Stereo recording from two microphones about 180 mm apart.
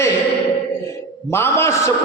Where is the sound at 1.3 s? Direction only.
15° left (ahead or behind).